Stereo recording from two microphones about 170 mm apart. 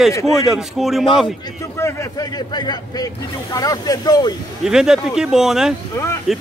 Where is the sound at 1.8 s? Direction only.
20° left (ahead or behind).